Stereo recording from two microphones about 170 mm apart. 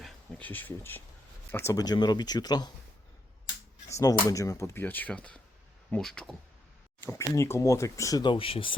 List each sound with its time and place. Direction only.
0.0 s speech: 10° left (ahead or behind); by 2.7 s 25° left (ahead or behind)
3.8 s speech: 20° left (ahead or behind); by 6.3 s 5° left (ahead or behind)
7.0 s speech: 15° left (ahead or behind); by 8.7 s 30° left (ahead or behind)